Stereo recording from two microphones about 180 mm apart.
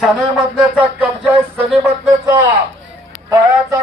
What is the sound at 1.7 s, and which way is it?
Speech, 5° right (ahead or behind).